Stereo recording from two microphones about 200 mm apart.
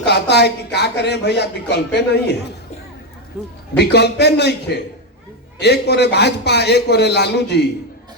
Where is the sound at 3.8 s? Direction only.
55° left (ahead or behind).